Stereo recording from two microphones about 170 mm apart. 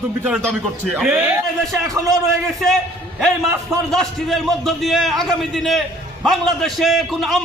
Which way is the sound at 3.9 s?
Centre (ahead or behind).